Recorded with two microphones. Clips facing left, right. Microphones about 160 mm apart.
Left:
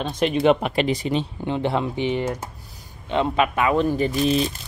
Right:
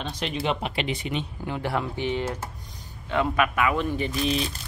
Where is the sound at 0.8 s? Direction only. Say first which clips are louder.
Left 7 dB; 35° left (ahead or behind).